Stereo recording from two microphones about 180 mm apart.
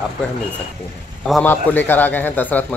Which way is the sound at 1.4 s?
10° left (ahead or behind).